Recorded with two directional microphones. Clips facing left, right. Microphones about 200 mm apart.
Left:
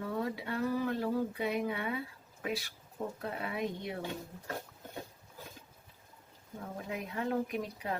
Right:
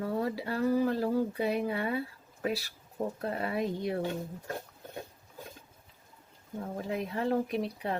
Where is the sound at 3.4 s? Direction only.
40° right (ahead or behind).